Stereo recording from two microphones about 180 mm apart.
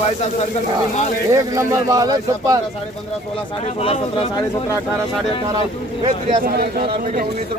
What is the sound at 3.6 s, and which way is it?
Speech, 35° left (ahead or behind).